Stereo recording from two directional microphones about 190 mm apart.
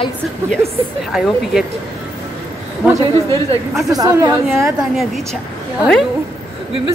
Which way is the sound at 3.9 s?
20° right (ahead or behind).